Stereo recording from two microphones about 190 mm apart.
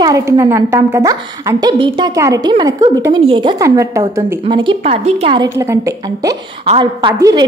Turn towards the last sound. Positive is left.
turn(degrees=-20)  # may be behind; listen again after turning